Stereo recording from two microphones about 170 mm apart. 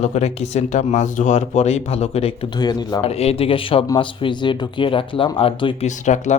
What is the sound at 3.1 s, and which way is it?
Speech, 35° left (ahead or behind).